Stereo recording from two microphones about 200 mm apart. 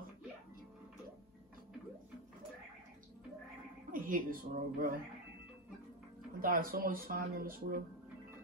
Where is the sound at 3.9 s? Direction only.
45° right (ahead or behind).